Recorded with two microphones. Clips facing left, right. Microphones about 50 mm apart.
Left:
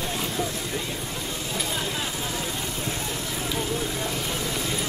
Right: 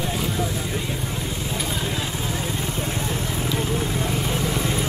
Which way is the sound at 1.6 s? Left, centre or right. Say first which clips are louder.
Right 1 dB; centre.